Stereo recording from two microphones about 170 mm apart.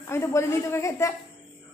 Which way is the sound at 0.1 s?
15° left (ahead or behind).